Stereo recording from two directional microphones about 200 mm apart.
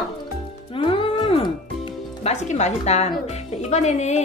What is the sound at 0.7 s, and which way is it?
A woman's voice, 25° left (ahead or behind).